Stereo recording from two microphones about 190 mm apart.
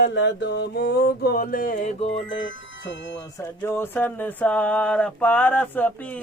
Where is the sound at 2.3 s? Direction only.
75° left (ahead or behind).